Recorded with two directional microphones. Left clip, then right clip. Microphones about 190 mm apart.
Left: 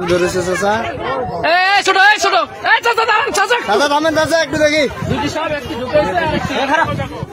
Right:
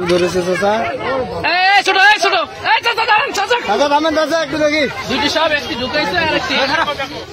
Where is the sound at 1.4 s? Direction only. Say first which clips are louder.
Even; 30° left (ahead or behind).